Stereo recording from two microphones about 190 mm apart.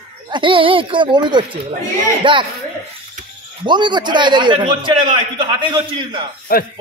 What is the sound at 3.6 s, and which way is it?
A man's voice, 25° right (ahead or behind).